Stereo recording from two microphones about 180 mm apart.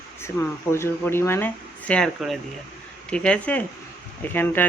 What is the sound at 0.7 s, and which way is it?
Speech, 15° left (ahead or behind).